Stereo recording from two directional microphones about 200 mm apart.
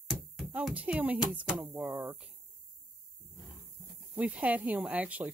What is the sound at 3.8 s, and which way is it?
Speech, 5° right (ahead or behind).